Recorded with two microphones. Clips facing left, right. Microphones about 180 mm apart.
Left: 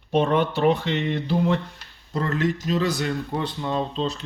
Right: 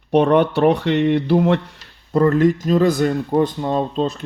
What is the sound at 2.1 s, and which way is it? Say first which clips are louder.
Speech: right 10 dB; 50° right (ahead or behind).